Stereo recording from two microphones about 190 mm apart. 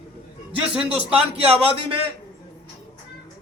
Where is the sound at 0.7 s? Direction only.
5° right (ahead or behind).